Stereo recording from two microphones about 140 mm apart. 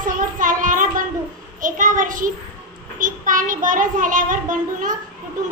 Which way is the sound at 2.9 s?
70° right (ahead or behind).